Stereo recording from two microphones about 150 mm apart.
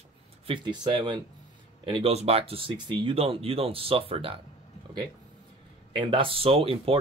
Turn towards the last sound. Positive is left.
turn(degrees=-40)  # may be behind; listen again after turning